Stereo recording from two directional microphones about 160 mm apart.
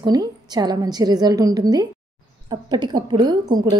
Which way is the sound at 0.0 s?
25° right (ahead or behind).